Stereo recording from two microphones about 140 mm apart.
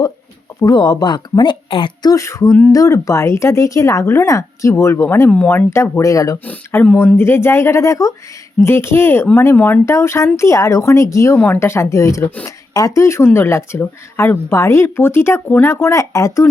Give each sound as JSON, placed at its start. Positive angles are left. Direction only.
{"t": 0.6, "sound": "speech", "side_deg": 25}
{"t": 12.5, "sound": "speech", "side_deg": 25}